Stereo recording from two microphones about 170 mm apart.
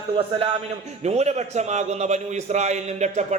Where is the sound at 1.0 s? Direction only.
40° right (ahead or behind).